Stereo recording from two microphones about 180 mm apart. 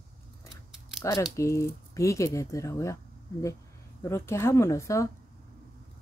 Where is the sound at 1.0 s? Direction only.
15° left (ahead or behind).